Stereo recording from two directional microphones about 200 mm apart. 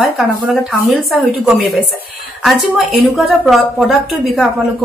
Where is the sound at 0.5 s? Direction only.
Centre (ahead or behind).